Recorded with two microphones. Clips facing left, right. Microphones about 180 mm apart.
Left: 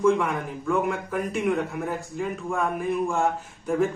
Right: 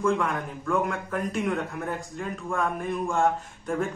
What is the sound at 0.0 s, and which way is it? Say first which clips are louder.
Speech: left 4 dB; 5° left (ahead or behind).